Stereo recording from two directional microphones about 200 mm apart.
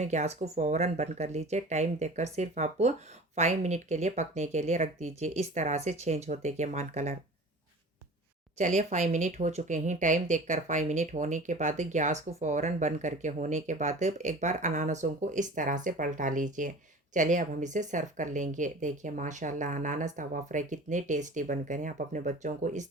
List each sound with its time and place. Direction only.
0.0 s speech: 35° right (ahead or behind)
8.5 s speech: 35° right (ahead or behind)